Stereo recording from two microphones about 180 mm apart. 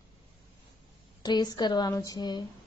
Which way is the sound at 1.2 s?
20° left (ahead or behind).